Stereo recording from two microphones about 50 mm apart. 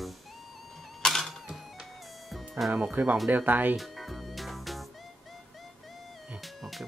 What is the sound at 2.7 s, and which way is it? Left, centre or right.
Speech, right.